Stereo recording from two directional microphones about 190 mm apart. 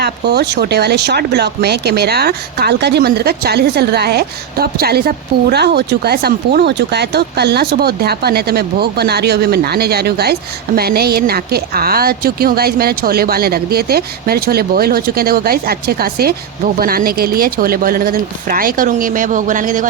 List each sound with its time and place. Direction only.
0.0 s a woman's voice: 60° right (ahead or behind); by 19.9 s 45° right (ahead or behind)